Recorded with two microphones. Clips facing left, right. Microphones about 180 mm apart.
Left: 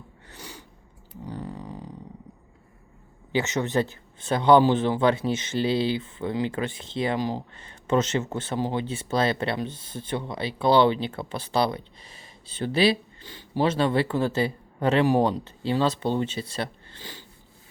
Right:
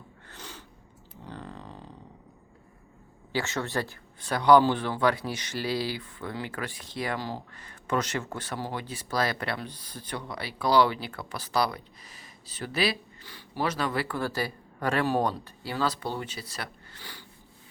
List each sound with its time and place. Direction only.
0.3 s sneeze: 10° left (ahead or behind)
1.2 s a sound: 10° left (ahead or behind)
3.3 s speech: 20° left (ahead or behind)